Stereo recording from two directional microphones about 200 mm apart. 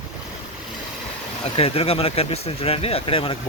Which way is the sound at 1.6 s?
30° left (ahead or behind).